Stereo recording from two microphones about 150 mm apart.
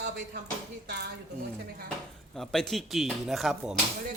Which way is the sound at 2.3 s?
Centre (ahead or behind).